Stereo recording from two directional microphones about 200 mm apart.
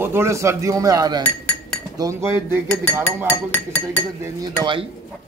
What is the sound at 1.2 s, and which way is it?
Speech, 5° left (ahead or behind).